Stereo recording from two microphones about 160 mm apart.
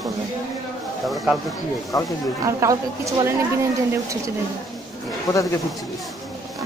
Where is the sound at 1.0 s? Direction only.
Centre (ahead or behind).